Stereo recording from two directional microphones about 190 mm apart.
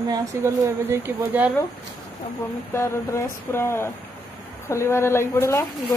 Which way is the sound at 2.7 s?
15° left (ahead or behind).